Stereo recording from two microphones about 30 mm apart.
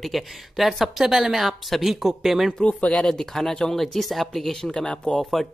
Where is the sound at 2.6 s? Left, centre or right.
Left.